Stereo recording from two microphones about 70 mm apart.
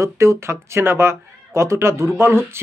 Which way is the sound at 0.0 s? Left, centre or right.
Right.